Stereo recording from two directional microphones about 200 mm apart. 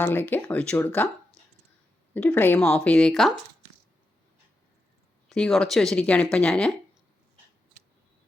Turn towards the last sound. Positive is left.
turn(degrees=5)  # may be behind; listen again after turning